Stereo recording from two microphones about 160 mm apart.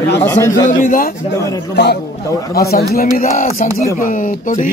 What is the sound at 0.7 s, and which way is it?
Speech, 55° left (ahead or behind).